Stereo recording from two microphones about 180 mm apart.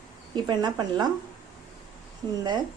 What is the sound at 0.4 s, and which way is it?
Speech, 25° right (ahead or behind).